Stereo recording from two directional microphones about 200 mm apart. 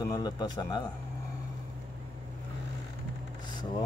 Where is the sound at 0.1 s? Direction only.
20° left (ahead or behind).